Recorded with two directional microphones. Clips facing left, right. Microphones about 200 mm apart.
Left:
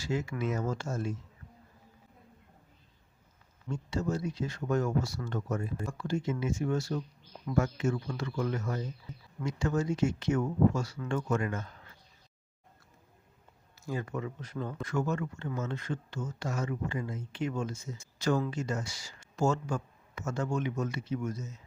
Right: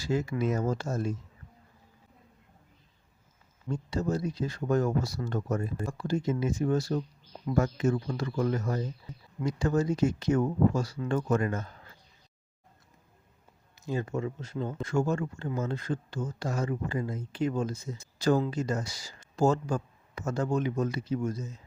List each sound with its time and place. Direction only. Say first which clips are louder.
0.0 s speech: right 4 dB; 35° right (ahead or behind)
3.7 s speech: right 2 dB; 35° right (ahead or behind)
13.7 s speech: right 4 dB; 25° right (ahead or behind)